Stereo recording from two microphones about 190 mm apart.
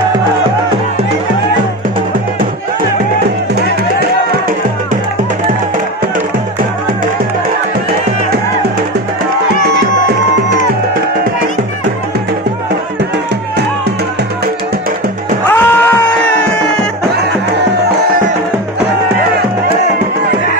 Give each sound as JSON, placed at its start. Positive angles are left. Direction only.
{"t": 15.4, "sound": "music", "side_deg": 10}
{"t": 17.1, "sound": "music", "side_deg": -60}